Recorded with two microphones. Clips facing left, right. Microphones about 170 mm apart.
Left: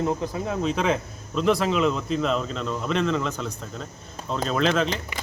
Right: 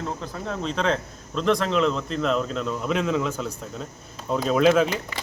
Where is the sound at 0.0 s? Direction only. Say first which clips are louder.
Left 5 dB; 15° left (ahead or behind).